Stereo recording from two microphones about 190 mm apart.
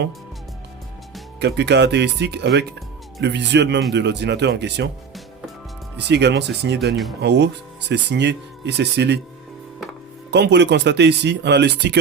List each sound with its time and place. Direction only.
1.4 s speech: 65° right (ahead or behind)
6.1 s speech: 65° right (ahead or behind)
10.3 s speech: 65° right (ahead or behind)